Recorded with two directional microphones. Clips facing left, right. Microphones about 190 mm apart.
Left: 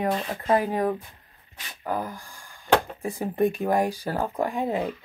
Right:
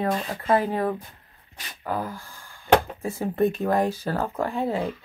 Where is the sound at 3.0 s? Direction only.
15° left (ahead or behind).